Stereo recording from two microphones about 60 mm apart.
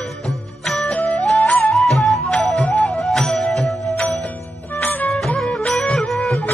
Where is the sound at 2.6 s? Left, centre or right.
Left.